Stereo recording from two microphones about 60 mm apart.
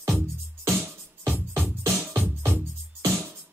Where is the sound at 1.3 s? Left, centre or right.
Right.